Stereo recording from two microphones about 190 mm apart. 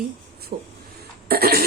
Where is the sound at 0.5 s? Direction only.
50° right (ahead or behind).